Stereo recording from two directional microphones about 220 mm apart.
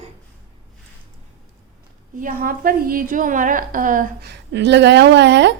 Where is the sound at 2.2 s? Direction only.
40° right (ahead or behind).